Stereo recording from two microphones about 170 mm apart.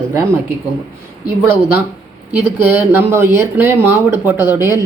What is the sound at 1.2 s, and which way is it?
Speech, 15° right (ahead or behind).